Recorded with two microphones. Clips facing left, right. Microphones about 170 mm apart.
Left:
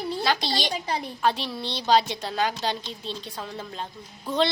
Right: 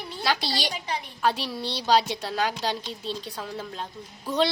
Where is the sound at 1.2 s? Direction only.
10° right (ahead or behind).